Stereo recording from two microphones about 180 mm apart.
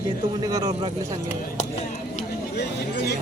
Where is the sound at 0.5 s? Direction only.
20° right (ahead or behind).